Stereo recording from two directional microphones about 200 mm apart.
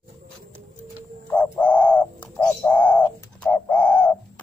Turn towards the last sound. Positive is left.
turn(degrees=10)  # may be behind; listen again after turning